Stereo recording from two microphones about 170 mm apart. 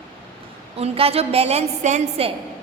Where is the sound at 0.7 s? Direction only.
35° right (ahead or behind).